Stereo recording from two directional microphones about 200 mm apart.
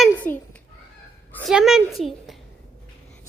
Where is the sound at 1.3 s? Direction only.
10° left (ahead or behind).